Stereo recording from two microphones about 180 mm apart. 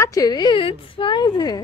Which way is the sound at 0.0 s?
20° left (ahead or behind).